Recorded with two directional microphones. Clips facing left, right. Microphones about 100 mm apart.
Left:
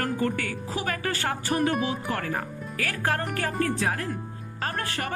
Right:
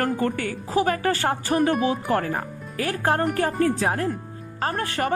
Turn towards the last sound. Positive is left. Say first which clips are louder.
# right 6 dB
turn(degrees=-30)  # may be behind; listen again after turning